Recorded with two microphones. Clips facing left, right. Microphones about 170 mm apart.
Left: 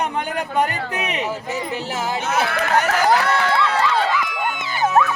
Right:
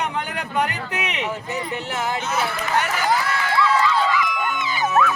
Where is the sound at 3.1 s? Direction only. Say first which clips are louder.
Left 4 dB; 70° left (ahead or behind); by 4.9 s 55° left (ahead or behind).